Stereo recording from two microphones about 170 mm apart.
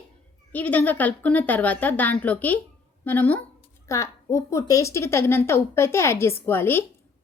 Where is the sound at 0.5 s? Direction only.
10° left (ahead or behind).